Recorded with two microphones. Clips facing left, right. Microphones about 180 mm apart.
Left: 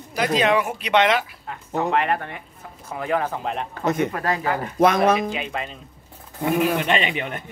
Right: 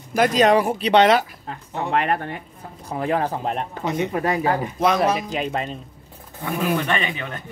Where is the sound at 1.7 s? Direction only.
40° left (ahead or behind).